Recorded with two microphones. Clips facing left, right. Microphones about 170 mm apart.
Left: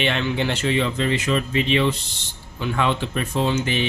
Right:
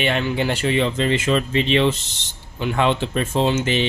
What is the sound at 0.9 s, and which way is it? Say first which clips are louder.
Speech: right 2 dB; 25° right (ahead or behind).